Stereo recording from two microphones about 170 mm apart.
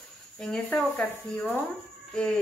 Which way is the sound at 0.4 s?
5° left (ahead or behind).